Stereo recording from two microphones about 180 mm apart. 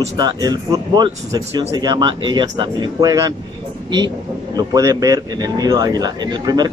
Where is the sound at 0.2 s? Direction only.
20° right (ahead or behind).